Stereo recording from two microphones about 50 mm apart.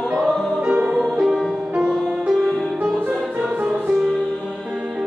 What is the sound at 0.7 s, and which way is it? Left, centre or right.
Music, right.